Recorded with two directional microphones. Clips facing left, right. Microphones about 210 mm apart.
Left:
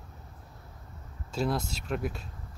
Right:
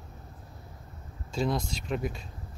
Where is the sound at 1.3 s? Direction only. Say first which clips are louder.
Right 1 dB; 5° left (ahead or behind).